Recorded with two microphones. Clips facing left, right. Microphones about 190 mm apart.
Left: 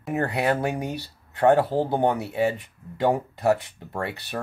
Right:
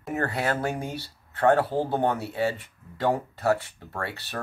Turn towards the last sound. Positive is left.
turn(degrees=15)  # may be behind; listen again after turning